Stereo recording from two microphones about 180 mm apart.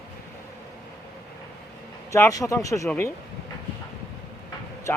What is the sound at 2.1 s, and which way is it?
Speech, 15° left (ahead or behind).